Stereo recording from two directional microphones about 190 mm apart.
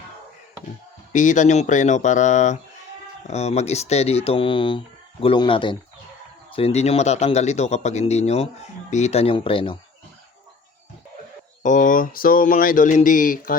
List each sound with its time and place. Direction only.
1.1 s a man's voice: 40° left (ahead or behind)
11.6 s speech: 40° left (ahead or behind)